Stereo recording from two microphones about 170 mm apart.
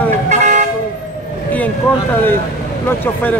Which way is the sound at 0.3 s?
45° right (ahead or behind).